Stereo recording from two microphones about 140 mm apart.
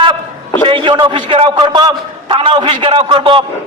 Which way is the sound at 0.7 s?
35° right (ahead or behind).